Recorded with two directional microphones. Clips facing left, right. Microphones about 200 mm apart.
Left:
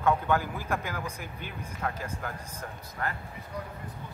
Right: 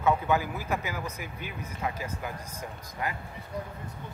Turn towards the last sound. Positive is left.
turn(degrees=-10)  # may be behind; listen again after turning